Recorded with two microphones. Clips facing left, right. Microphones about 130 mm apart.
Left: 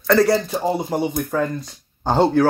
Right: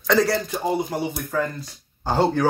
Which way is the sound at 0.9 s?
25° left (ahead or behind).